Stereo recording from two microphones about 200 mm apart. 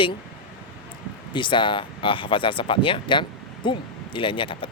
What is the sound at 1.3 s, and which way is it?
Speech, 25° left (ahead or behind).